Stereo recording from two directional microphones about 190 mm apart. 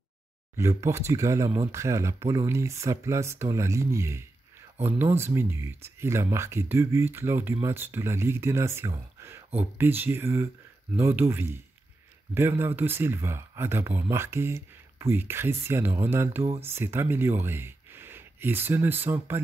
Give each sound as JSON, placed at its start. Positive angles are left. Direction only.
{"t": 0.6, "sound": "speech", "side_deg": -15}